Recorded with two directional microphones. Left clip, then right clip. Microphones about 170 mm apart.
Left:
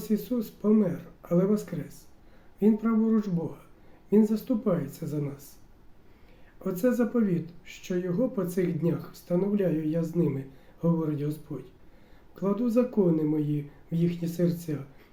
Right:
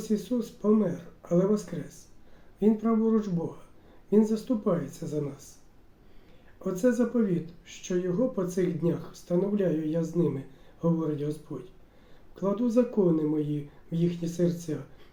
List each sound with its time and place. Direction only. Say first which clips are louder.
0.0 s speech: even; 20° left (ahead or behind)
6.6 s speech: even; 20° left (ahead or behind)
12.4 s speech: even; 20° left (ahead or behind)